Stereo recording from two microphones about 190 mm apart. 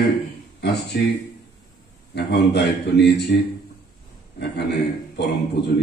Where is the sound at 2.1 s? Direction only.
60° left (ahead or behind).